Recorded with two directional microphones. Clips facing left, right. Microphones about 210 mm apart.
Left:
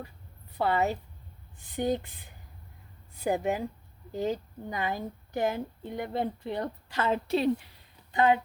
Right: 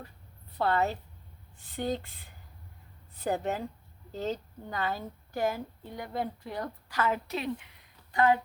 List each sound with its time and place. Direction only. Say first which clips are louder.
0.6 s a woman's voice: left 1 dB; 15° left (ahead or behind); by 7.9 s 35° left (ahead or behind)
8.1 s speech: left 1 dB; 20° left (ahead or behind)